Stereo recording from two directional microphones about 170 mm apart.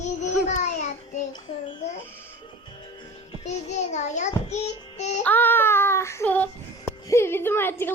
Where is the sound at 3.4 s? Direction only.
40° left (ahead or behind).